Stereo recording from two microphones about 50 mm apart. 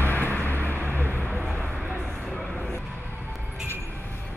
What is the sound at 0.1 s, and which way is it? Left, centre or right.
Vehicle, left.